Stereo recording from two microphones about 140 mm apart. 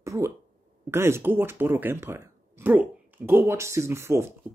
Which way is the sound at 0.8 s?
20° right (ahead or behind).